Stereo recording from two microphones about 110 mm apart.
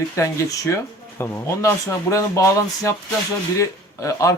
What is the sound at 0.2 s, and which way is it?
Speech, 30° left (ahead or behind).